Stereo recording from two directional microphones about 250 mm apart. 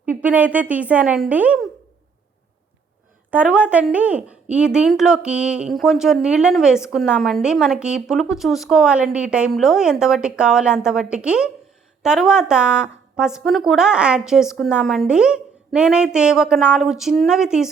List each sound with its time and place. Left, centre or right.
0.0 s a woman's voice: centre
3.2 s speech: centre